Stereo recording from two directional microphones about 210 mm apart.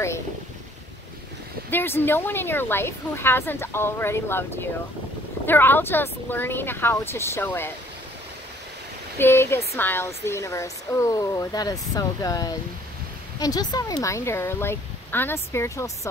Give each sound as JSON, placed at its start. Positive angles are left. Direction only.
{"t": 1.7, "sound": "speech", "side_deg": 10}
{"t": 9.2, "sound": "speech", "side_deg": 10}